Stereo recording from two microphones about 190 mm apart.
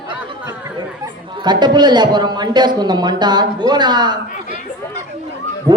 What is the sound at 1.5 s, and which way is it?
A man's voice, 20° right (ahead or behind).